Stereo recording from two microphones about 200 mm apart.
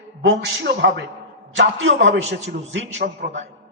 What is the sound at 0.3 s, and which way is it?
A man's voice, 55° right (ahead or behind).